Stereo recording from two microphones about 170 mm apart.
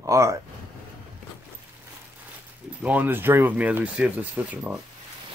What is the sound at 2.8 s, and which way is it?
Speech, 10° right (ahead or behind).